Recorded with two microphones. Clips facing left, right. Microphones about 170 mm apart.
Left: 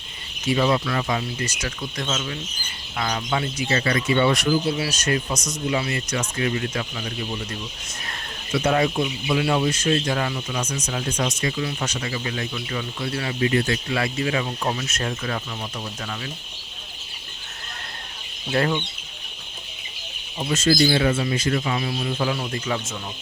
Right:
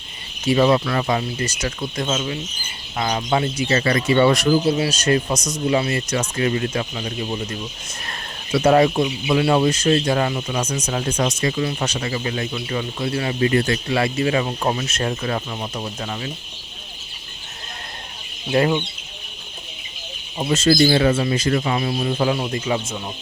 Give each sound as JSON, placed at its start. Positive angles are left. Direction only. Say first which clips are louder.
{"t": 0.4, "sound": "speech", "louder": "right 4 dB", "side_deg": -40}
{"t": 3.2, "sound": "speech", "louder": "right 6 dB", "side_deg": -35}
{"t": 4.8, "sound": "speech", "louder": "right 5 dB", "side_deg": -30}
{"t": 8.5, "sound": "speech", "louder": "right 6 dB", "side_deg": -40}
{"t": 18.5, "sound": "speech", "louder": "right 4 dB", "side_deg": -15}
{"t": 20.4, "sound": "speech", "louder": "right 3 dB", "side_deg": -35}
{"t": 22.4, "sound": "speech", "louder": "right 4 dB", "side_deg": -20}